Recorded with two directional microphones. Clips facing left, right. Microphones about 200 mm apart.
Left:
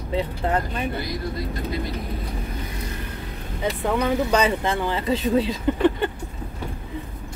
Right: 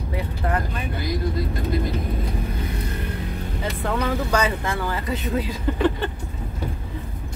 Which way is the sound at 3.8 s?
15° left (ahead or behind).